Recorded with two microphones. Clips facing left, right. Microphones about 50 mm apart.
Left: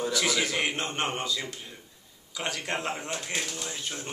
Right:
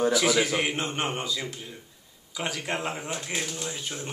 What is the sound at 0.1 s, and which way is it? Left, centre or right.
Speech, centre.